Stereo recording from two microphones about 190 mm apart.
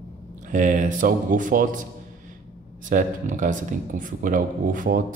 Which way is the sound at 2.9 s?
45° right (ahead or behind).